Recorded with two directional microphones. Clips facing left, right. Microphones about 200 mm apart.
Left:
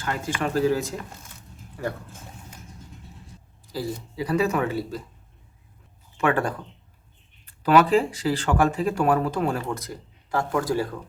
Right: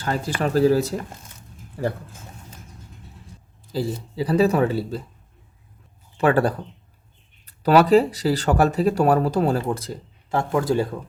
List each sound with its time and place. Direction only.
0.0 s speech: 35° right (ahead or behind)
3.7 s speech: 25° right (ahead or behind)
6.1 s speech: 35° right (ahead or behind)